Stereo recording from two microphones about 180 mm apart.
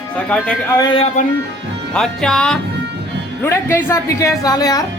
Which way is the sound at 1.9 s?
5° left (ahead or behind).